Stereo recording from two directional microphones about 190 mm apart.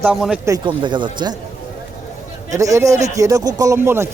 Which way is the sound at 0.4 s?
20° right (ahead or behind).